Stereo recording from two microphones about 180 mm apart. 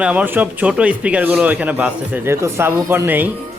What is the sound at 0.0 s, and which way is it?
Speech, 5° right (ahead or behind).